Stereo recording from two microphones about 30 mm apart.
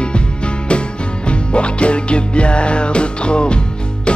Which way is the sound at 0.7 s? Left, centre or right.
Left.